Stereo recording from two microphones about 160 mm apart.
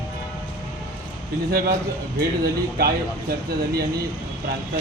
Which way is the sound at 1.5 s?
70° right (ahead or behind).